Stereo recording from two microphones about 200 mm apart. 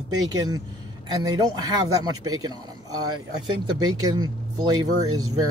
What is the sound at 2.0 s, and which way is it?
Speech, 20° right (ahead or behind).